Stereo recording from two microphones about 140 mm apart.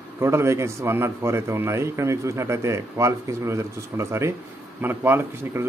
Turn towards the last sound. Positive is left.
turn(degrees=-15)  # may be behind; listen again after turning